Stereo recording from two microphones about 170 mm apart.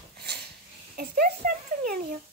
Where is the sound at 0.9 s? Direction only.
60° right (ahead or behind).